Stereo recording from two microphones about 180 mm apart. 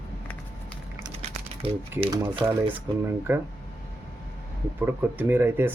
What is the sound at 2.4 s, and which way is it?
Speech, 20° right (ahead or behind).